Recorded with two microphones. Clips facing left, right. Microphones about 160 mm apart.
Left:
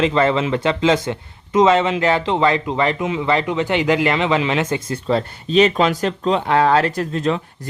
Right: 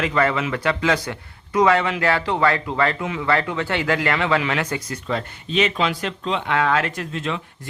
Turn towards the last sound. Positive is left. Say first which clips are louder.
# left 7 dB
turn(degrees=40)  # may be behind; listen again after turning